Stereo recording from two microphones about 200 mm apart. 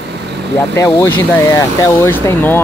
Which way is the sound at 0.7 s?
10° left (ahead or behind).